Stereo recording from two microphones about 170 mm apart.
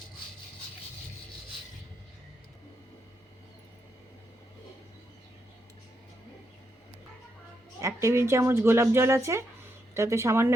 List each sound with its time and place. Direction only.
8.0 s speech: 15° right (ahead or behind)